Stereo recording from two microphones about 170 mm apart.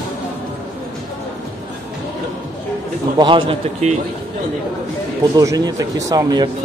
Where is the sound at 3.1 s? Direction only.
30° right (ahead or behind).